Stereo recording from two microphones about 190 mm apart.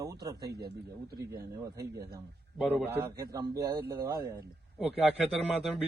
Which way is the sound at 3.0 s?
20° right (ahead or behind).